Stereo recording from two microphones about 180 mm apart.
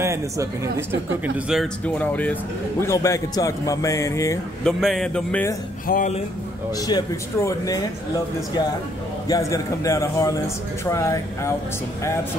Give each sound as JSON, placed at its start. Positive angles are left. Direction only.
{"t": 0.0, "sound": "speech", "side_deg": -15}
{"t": 1.5, "sound": "speech", "side_deg": 5}
{"t": 4.6, "sound": "speech", "side_deg": 0}
{"t": 5.9, "sound": "speech", "side_deg": 50}
{"t": 6.9, "sound": "speech", "side_deg": 20}
{"t": 9.3, "sound": "speech", "side_deg": 15}